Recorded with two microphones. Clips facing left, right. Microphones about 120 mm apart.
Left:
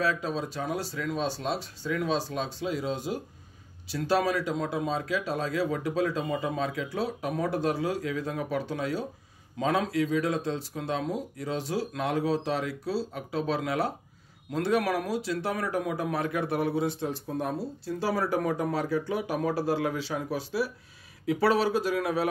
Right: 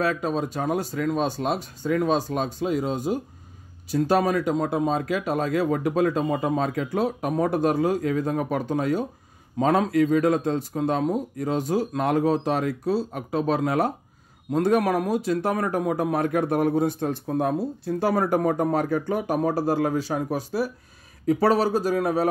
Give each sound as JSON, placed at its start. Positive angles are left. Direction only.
{"t": 0.0, "sound": "speech", "side_deg": -50}